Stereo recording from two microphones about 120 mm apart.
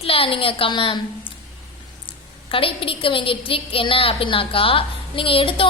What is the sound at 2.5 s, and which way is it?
A woman's voice, 50° left (ahead or behind).